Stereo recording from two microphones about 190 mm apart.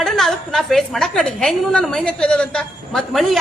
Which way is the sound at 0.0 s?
Centre (ahead or behind).